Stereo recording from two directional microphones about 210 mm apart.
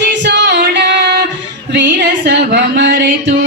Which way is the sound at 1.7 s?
55° right (ahead or behind).